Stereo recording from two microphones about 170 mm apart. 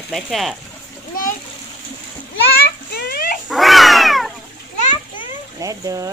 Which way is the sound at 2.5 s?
65° left (ahead or behind).